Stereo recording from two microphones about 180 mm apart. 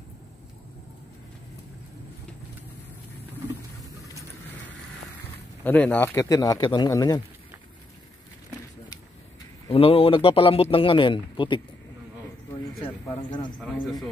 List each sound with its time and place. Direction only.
5.6 s a man's voice: 10° left (ahead or behind)
9.7 s a man's voice: 30° left (ahead or behind)
12.8 s a man's voice: 25° left (ahead or behind)
13.6 s a man's voice: centre (ahead or behind)